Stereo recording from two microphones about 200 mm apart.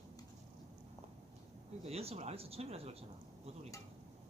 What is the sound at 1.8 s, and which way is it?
Speech, 30° right (ahead or behind).